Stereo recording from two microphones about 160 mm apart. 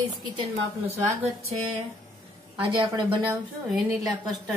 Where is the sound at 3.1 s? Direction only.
10° right (ahead or behind).